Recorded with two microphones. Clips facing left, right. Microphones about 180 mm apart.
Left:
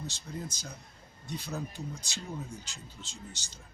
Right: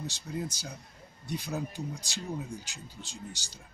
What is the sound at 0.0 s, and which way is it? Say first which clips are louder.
Speech: right 4 dB; 15° right (ahead or behind).